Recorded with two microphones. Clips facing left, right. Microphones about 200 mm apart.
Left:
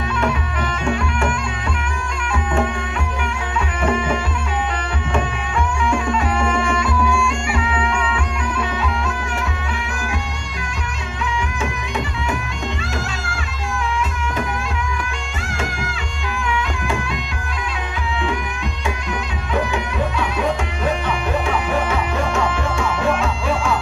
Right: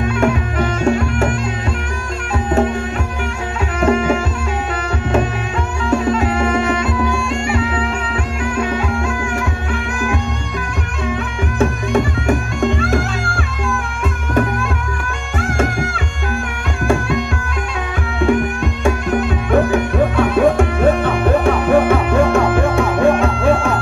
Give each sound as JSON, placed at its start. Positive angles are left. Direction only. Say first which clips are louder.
{"t": 0.2, "sound": "music", "louder": "right 6 dB", "side_deg": -45}
{"t": 3.8, "sound": "music", "louder": "right 6 dB", "side_deg": -40}
{"t": 5.9, "sound": "music", "louder": "right 8 dB", "side_deg": -40}
{"t": 11.6, "sound": "music", "louder": "right 9 dB", "side_deg": -50}
{"t": 15.5, "sound": "music", "louder": "right 7 dB", "side_deg": -50}
{"t": 18.9, "sound": "music", "louder": "right 10 dB", "side_deg": -50}